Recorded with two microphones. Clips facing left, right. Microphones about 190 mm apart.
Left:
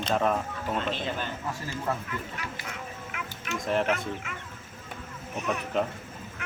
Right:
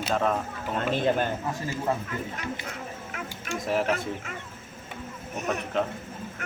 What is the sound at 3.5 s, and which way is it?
Speech, 5° right (ahead or behind).